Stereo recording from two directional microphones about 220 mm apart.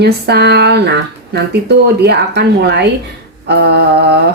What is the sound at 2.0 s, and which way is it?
Speech, 50° right (ahead or behind).